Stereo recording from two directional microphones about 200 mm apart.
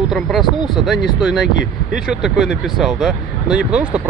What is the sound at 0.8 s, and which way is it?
Speech, centre (ahead or behind).